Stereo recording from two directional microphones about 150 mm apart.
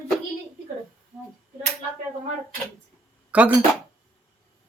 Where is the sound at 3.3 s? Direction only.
10° right (ahead or behind).